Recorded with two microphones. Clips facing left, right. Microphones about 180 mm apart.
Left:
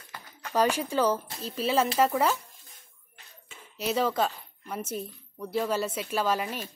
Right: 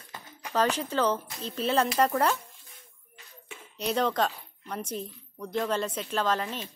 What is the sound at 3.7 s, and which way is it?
A woman's voice, 5° left (ahead or behind).